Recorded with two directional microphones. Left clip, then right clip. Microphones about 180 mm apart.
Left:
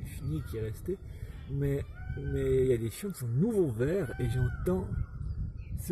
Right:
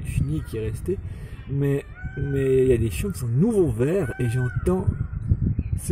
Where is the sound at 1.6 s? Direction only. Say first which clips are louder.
Right 9 dB; 30° right (ahead or behind).